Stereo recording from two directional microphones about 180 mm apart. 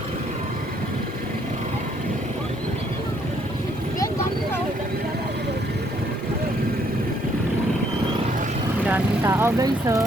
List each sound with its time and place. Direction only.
8.9 s speech: 10° right (ahead or behind)